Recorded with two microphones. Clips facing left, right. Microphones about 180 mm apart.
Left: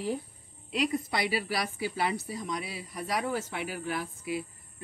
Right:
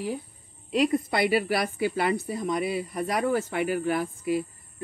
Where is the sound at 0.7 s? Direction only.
50° right (ahead or behind).